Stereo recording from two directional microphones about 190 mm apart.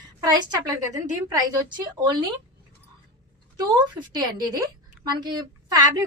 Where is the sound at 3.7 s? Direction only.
25° right (ahead or behind).